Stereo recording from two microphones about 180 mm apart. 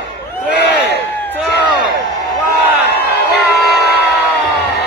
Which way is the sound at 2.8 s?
65° left (ahead or behind).